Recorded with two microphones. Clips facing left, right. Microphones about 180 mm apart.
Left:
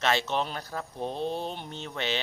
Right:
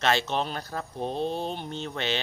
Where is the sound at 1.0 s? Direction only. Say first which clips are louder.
Right 2 dB; 25° right (ahead or behind).